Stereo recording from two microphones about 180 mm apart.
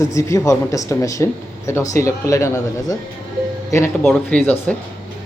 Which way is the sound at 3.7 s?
15° left (ahead or behind).